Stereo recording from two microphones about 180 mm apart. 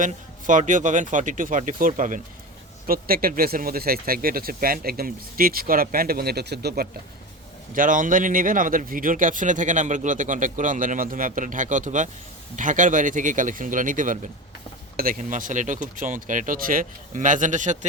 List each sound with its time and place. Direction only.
0.0 s a man's voice: 45° right (ahead or behind); by 6.8 s 65° right (ahead or behind)
7.7 s a man's voice: 50° right (ahead or behind)